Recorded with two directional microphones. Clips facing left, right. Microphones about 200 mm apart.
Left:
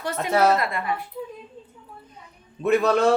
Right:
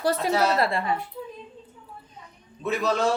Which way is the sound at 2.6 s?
60° left (ahead or behind).